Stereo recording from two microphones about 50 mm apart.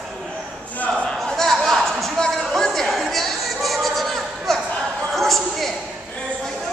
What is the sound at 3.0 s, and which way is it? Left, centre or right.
Chatter, centre.